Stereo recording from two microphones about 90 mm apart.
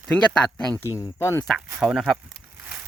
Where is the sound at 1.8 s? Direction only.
10° right (ahead or behind).